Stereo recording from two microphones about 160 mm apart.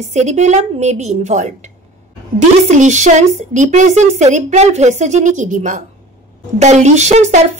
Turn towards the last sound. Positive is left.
turn(degrees=-45)  # may be behind; listen again after turning